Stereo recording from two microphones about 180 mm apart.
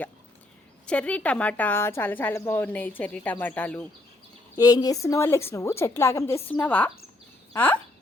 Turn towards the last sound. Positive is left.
turn(degrees=10)  # may be behind; listen again after turning